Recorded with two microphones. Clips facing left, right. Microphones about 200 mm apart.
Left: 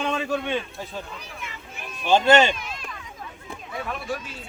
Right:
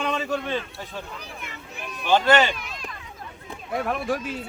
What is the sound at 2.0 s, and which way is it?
Speech, 20° left (ahead or behind).